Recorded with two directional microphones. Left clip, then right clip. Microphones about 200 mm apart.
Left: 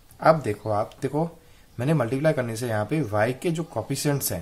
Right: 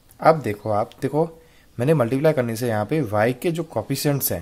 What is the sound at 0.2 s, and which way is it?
Speech, 30° right (ahead or behind).